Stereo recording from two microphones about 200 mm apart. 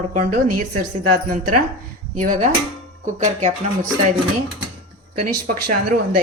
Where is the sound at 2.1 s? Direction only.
40° right (ahead or behind).